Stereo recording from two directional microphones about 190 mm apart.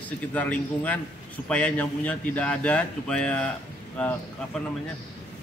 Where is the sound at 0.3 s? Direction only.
5° left (ahead or behind).